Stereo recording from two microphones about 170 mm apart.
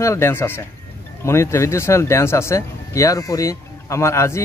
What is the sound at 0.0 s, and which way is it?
Speech, 15° left (ahead or behind).